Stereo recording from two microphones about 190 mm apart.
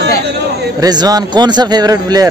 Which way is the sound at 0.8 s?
20° right (ahead or behind).